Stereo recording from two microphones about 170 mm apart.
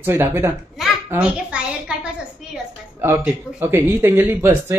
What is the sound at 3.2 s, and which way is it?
Speech, 10° right (ahead or behind).